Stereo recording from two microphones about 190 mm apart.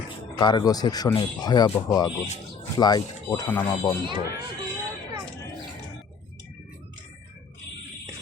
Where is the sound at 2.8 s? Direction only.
20° left (ahead or behind).